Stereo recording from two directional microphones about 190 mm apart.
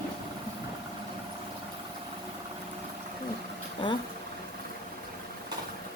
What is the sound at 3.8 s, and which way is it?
Speech, 25° left (ahead or behind).